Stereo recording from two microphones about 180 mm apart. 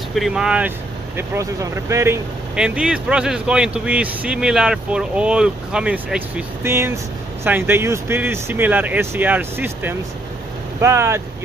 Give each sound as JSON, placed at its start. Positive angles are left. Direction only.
{"t": 0.1, "sound": "speech", "side_deg": 0}
{"t": 2.5, "sound": "speech", "side_deg": -5}